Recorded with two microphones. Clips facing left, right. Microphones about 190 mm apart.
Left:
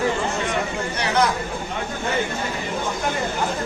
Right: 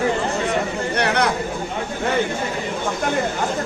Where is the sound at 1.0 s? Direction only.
65° right (ahead or behind).